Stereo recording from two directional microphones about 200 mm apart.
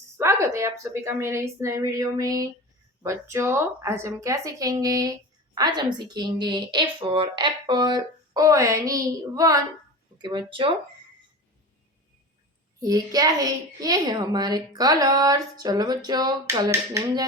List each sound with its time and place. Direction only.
0.2 s a woman's voice: 15° right (ahead or behind)
12.8 s a child's voice: 20° right (ahead or behind)